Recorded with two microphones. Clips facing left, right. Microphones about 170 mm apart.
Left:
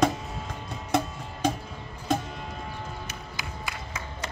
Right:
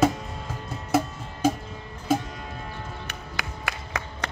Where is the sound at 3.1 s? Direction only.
65° right (ahead or behind).